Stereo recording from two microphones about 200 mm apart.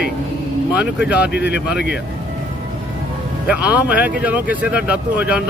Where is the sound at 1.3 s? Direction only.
55° left (ahead or behind).